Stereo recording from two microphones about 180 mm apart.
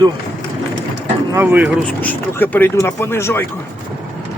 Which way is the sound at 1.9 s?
10° left (ahead or behind).